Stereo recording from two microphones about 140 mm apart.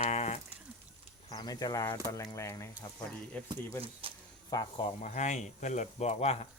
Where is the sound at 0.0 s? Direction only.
55° left (ahead or behind).